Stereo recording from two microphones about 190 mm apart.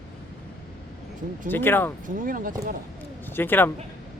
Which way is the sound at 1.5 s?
10° left (ahead or behind).